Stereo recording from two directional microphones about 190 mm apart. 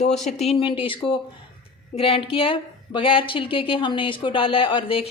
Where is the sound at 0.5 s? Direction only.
30° left (ahead or behind).